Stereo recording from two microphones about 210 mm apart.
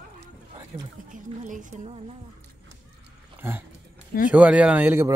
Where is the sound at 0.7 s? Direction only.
30° right (ahead or behind).